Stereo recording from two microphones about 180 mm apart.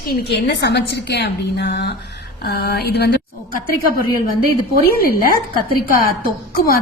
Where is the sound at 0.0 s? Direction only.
60° left (ahead or behind).